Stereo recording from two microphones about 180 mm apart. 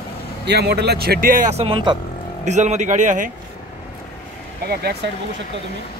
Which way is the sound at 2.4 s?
40° right (ahead or behind).